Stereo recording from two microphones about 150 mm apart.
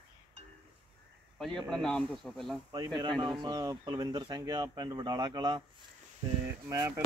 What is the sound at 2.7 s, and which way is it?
Speech, 30° right (ahead or behind).